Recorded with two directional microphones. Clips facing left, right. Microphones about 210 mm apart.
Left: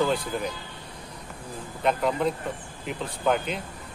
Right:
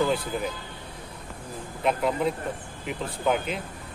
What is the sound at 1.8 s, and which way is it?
Speech, 5° right (ahead or behind).